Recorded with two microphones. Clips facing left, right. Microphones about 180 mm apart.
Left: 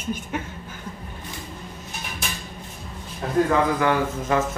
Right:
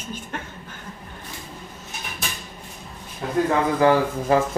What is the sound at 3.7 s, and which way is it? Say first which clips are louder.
Speech: right 4 dB; 30° right (ahead or behind).